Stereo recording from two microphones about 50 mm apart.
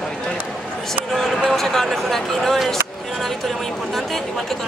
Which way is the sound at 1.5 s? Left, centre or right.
Centre.